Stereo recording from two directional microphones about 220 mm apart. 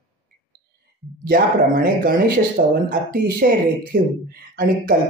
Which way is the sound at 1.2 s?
40° right (ahead or behind).